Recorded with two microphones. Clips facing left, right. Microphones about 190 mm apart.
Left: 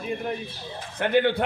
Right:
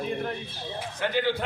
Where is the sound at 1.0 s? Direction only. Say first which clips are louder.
Left 5 dB; 60° left (ahead or behind).